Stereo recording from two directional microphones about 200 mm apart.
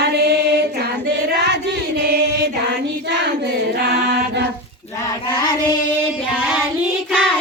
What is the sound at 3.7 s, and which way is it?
Music, 55° right (ahead or behind).